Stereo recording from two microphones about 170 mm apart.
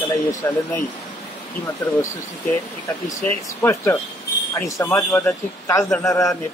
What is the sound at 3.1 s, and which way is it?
Speech, 15° left (ahead or behind).